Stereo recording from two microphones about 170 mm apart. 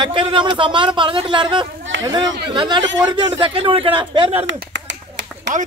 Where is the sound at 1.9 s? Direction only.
90° right.